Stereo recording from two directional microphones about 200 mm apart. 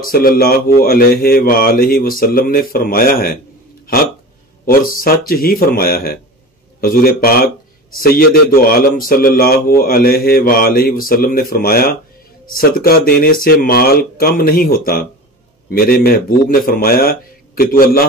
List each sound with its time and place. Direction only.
0.0 s a man's voice: 45° left (ahead or behind)